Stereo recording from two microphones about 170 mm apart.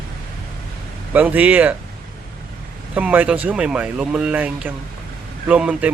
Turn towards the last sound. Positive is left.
turn(degrees=-5)  # may be behind; listen again after turning